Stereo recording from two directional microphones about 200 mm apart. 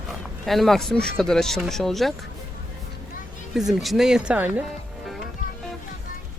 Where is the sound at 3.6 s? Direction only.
Centre (ahead or behind).